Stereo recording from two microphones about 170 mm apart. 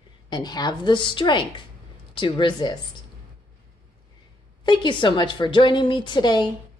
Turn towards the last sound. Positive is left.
turn(degrees=25)  # may be behind; listen again after turning